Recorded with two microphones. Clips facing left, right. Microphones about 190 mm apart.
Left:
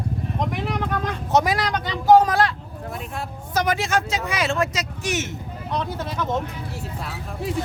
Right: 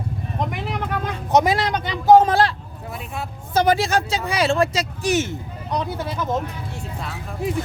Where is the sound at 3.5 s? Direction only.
30° right (ahead or behind).